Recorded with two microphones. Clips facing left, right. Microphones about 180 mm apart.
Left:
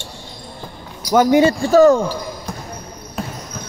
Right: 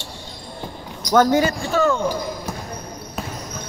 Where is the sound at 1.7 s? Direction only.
40° left (ahead or behind).